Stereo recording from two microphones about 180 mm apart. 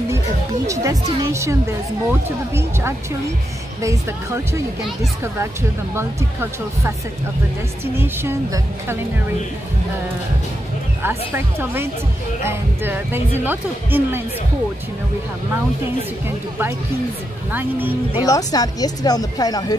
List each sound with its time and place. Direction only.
0.7 s speech: 15° right (ahead or behind)
3.8 s speech: 15° right (ahead or behind)
5.9 s speech: 15° right (ahead or behind)
11.0 s speech: 10° right (ahead or behind)
17.5 s speech: 10° right (ahead or behind)
18.2 s speech: 20° left (ahead or behind)